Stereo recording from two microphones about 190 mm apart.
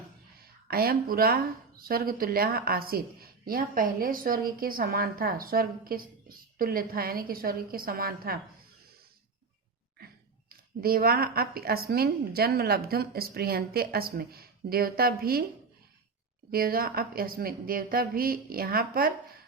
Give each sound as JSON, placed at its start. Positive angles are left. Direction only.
{"t": 0.7, "sound": "speech", "side_deg": -50}
{"t": 10.8, "sound": "speech", "side_deg": -50}
{"t": 16.5, "sound": "speech", "side_deg": -50}